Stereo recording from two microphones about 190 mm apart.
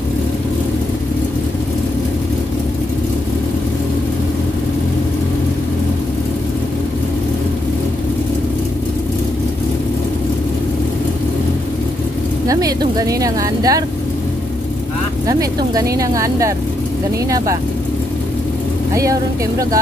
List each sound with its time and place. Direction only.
12.4 s speech: 20° right (ahead or behind)
15.2 s speech: 20° right (ahead or behind)